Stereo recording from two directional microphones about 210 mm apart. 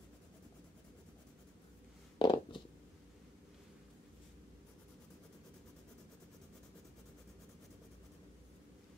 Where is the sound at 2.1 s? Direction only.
20° left (ahead or behind).